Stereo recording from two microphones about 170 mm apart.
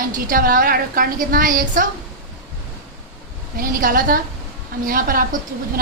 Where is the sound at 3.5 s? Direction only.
55° right (ahead or behind).